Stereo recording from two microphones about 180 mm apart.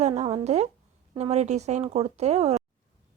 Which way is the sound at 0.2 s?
35° right (ahead or behind).